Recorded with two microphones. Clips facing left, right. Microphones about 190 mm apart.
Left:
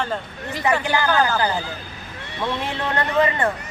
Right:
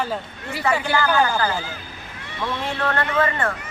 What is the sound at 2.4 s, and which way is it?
Speech, 20° left (ahead or behind).